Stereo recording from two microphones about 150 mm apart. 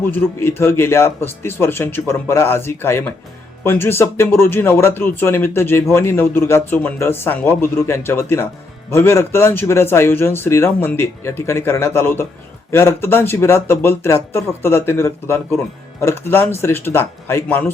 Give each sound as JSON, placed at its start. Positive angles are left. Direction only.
{"t": 0.0, "sound": "speech", "side_deg": 10}